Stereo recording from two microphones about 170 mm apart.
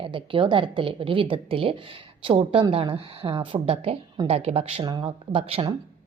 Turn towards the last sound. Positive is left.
turn(degrees=-35)  # may be behind; listen again after turning